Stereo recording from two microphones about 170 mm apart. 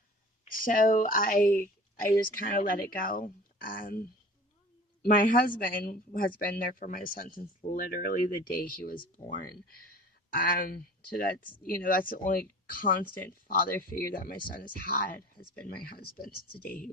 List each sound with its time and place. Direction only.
0.5 s a woman's voice: 55° left (ahead or behind)
5.0 s a woman's voice: 55° left (ahead or behind)
9.2 s speech: 30° left (ahead or behind)
10.3 s a woman's voice: 55° left (ahead or behind)